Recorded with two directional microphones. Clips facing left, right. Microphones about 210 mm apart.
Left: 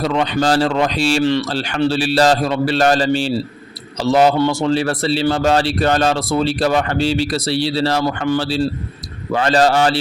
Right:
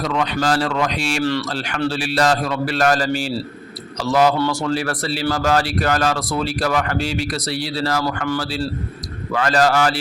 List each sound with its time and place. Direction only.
0.0 s speech: 30° left (ahead or behind)